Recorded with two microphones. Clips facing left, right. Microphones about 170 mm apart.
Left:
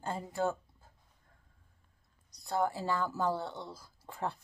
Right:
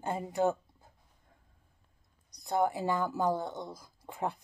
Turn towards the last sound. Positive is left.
turn(degrees=-15)  # may be behind; listen again after turning